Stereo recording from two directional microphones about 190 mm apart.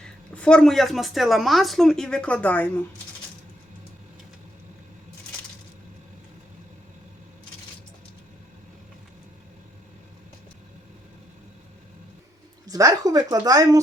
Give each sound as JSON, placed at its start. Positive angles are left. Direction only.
{"t": 0.3, "sound": "speech", "side_deg": 5}
{"t": 12.6, "sound": "speech", "side_deg": -20}